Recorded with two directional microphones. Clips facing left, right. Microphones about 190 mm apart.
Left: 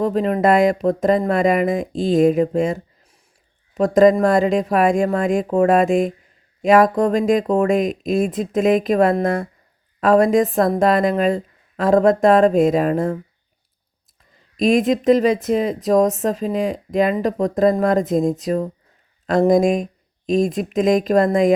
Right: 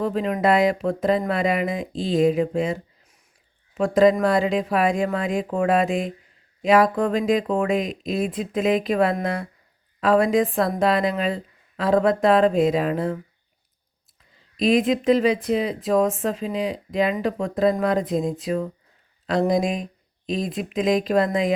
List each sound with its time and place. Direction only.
0.0 s speech: 40° left (ahead or behind)
3.8 s speech: 40° left (ahead or behind)
14.5 s speech: 45° left (ahead or behind)